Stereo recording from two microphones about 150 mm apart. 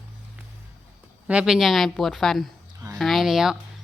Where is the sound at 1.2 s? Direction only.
5° right (ahead or behind).